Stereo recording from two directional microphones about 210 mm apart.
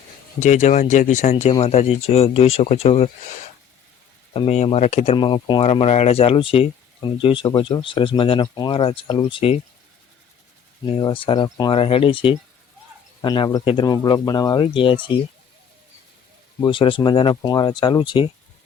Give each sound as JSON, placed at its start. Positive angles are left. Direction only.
{"t": 0.3, "sound": "speech", "side_deg": 35}
{"t": 4.4, "sound": "speech", "side_deg": 30}
{"t": 10.8, "sound": "speech", "side_deg": 25}
{"t": 16.6, "sound": "speech", "side_deg": 20}